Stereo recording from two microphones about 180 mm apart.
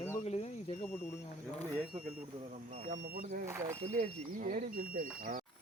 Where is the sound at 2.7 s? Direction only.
45° right (ahead or behind).